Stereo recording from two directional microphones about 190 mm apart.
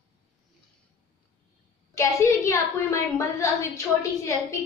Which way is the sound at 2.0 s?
15° left (ahead or behind).